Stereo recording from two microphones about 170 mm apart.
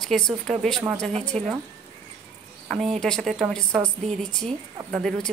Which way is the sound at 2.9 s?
5° left (ahead or behind).